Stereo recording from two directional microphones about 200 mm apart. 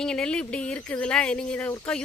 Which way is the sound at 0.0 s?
5° left (ahead or behind).